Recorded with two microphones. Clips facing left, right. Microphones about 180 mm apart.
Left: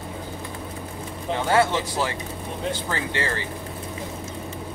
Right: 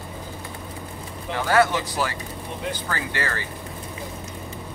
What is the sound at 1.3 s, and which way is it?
Speech, 25° left (ahead or behind).